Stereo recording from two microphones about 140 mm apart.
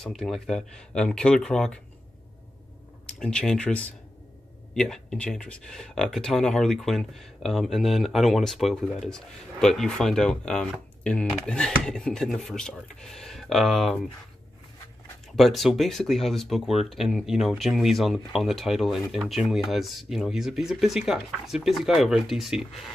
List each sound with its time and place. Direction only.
0.0 s speech: 5° left (ahead or behind)
3.2 s speech: 5° left (ahead or behind)
15.3 s speech: centre (ahead or behind)